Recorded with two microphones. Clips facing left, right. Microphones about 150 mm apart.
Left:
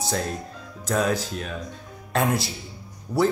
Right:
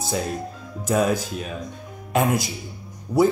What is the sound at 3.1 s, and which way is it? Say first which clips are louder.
Speech: right 4 dB; 20° right (ahead or behind).